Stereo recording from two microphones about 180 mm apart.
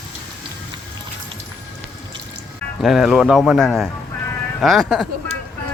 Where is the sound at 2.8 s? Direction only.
Centre (ahead or behind).